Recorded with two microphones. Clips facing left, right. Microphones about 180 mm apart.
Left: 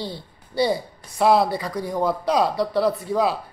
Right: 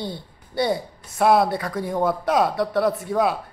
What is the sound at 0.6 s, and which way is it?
Speech, centre (ahead or behind).